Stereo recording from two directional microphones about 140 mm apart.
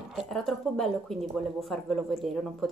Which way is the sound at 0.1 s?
Centre (ahead or behind).